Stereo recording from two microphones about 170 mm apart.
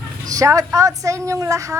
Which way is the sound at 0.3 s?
20° right (ahead or behind).